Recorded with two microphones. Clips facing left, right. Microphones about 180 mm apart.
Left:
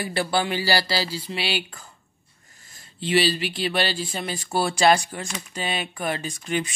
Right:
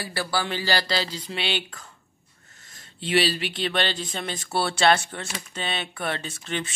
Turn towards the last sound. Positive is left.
turn(degrees=10)  # may be behind; listen again after turning